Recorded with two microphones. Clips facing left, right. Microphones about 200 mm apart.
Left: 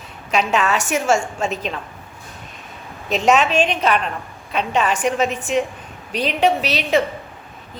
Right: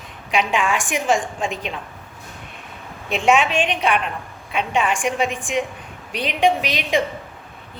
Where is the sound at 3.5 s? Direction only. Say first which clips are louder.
Left 3 dB; 35° left (ahead or behind).